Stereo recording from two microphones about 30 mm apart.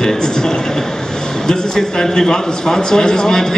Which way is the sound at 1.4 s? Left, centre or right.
Left.